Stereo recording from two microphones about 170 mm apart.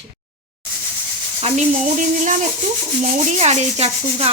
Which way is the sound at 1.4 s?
40° right (ahead or behind).